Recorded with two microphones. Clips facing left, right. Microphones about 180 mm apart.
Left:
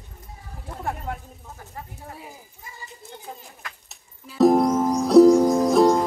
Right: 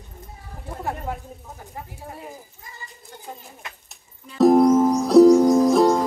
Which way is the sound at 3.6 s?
20° right (ahead or behind).